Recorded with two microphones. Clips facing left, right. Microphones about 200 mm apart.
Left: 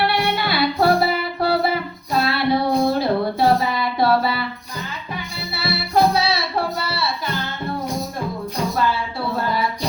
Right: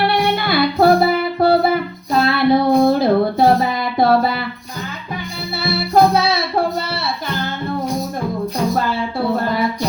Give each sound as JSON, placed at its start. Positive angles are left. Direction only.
{"t": 0.3, "sound": "music", "side_deg": -50}
{"t": 5.5, "sound": "music", "side_deg": -50}